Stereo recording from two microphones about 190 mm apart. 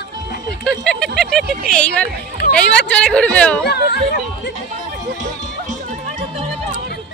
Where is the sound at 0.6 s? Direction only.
5° left (ahead or behind).